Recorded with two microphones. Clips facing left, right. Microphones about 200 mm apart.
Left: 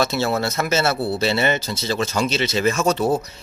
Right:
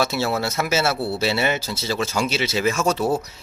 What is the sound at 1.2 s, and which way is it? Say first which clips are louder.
A man's voice: left 2 dB; 5° right (ahead or behind).